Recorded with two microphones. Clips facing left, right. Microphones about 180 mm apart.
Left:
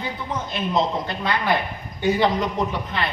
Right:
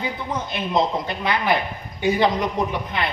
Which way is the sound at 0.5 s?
15° right (ahead or behind).